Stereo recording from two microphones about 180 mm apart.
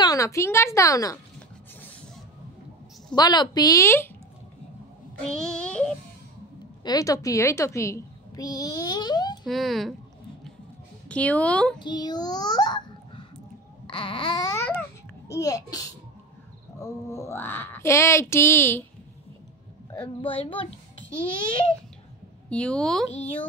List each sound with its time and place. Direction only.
0.0 s speech: 20° left (ahead or behind)
3.2 s a child's voice: 25° left (ahead or behind)
5.4 s a woman's voice: 5° left (ahead or behind)
6.8 s a child's voice: 20° left (ahead or behind)
9.5 s a woman's voice: centre (ahead or behind)
11.1 s speech: 5° left (ahead or behind)
11.8 s a child's voice: 25° left (ahead or behind)
14.8 s a sound: 15° left (ahead or behind)
16.8 s speech: 15° left (ahead or behind)
19.9 s a child's voice: 25° left (ahead or behind)
22.5 s a woman's voice: 5° left (ahead or behind)